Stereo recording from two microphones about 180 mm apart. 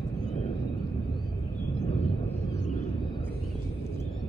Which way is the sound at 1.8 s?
35° left (ahead or behind).